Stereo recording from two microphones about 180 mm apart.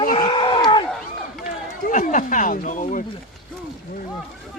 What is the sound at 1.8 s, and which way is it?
Speech, 45° left (ahead or behind).